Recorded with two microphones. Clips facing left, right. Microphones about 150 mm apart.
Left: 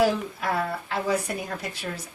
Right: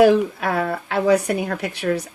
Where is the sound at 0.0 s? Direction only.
60° right (ahead or behind).